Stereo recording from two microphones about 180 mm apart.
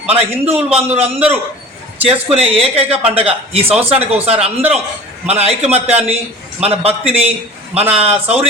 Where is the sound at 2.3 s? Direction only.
30° right (ahead or behind).